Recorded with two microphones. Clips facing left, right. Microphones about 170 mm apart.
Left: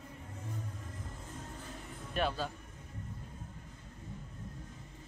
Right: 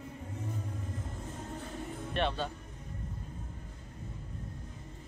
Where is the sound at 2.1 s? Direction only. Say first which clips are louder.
Right 1 dB; 5° left (ahead or behind).